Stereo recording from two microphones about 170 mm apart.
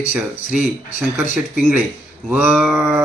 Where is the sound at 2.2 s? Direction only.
10° right (ahead or behind).